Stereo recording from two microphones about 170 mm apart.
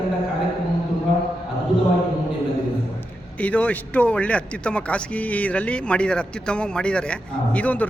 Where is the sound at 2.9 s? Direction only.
10° left (ahead or behind).